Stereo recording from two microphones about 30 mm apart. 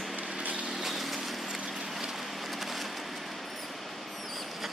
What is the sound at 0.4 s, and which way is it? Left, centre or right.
Vehicle, right.